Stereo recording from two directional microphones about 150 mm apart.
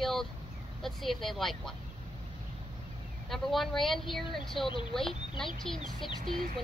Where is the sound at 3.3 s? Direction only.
Centre (ahead or behind).